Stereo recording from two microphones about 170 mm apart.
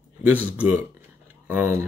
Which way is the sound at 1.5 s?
15° right (ahead or behind).